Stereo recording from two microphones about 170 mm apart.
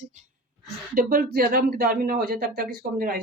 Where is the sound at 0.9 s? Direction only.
60° right (ahead or behind).